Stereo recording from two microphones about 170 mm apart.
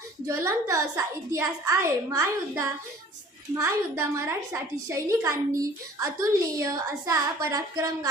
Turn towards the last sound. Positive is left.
turn(degrees=-20)  # may be behind; listen again after turning